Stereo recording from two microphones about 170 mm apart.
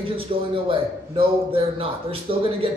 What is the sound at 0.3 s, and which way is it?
Speech, 35° right (ahead or behind).